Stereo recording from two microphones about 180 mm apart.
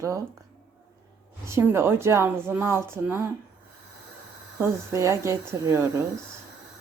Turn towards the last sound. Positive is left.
turn(degrees=-15)  # may be behind; listen again after turning